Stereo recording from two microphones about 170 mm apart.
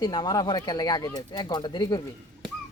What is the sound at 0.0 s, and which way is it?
Speech, 25° left (ahead or behind).